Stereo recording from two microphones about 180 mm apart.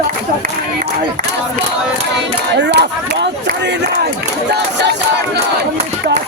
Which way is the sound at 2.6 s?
75° right (ahead or behind).